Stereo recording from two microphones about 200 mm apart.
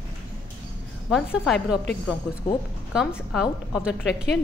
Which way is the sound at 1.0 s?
Centre (ahead or behind).